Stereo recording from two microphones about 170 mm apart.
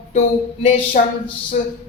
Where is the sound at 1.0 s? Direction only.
50° left (ahead or behind).